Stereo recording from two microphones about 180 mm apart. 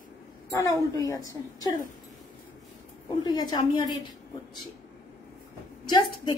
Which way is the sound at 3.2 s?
25° left (ahead or behind).